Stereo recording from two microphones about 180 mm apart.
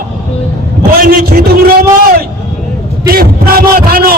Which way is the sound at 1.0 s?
55° right (ahead or behind).